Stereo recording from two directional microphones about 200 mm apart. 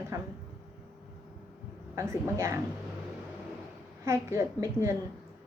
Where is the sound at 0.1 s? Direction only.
15° right (ahead or behind).